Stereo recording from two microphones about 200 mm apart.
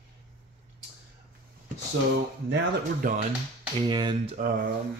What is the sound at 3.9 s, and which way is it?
Speech, 20° right (ahead or behind).